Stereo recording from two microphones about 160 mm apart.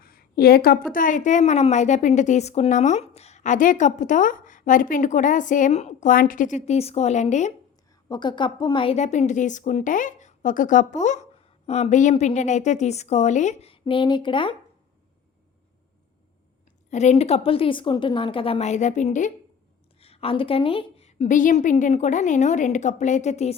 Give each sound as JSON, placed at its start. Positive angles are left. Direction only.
{"t": 0.0, "sound": "a woman's voice", "side_deg": 70}
{"t": 8.1, "sound": "a woman's voice", "side_deg": 30}
{"t": 16.9, "sound": "a woman's voice", "side_deg": 45}
{"t": 20.0, "sound": "a woman's voice", "side_deg": 40}